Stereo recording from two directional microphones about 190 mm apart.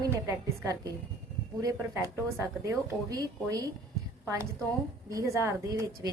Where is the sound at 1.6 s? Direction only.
20° right (ahead or behind).